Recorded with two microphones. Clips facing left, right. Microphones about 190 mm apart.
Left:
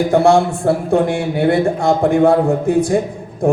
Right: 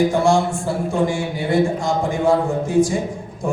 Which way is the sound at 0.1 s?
65° left (ahead or behind).